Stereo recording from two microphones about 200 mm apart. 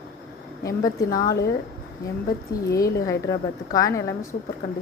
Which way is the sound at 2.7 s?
15° left (ahead or behind).